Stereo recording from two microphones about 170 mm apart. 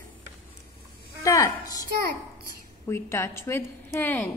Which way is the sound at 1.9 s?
60° right (ahead or behind).